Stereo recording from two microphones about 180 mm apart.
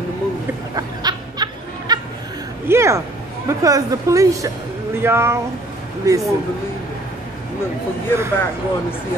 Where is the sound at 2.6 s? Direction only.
15° right (ahead or behind).